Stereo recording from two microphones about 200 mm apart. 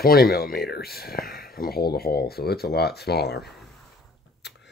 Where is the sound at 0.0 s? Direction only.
50° left (ahead or behind).